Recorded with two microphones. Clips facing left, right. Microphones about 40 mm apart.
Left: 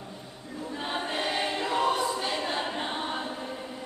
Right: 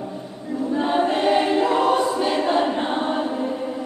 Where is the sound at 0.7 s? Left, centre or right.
Centre.